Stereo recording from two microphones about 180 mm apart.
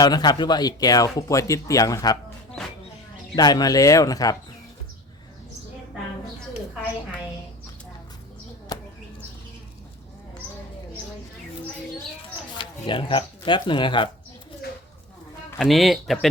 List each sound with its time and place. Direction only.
0.0 s speech: 25° left (ahead or behind)
3.3 s speech: 20° left (ahead or behind)
8.7 s a sound: 20° left (ahead or behind)
12.5 s speech: 30° left (ahead or behind)
15.5 s speech: centre (ahead or behind)